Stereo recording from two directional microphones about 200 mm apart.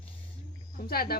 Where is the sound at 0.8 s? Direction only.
50° left (ahead or behind).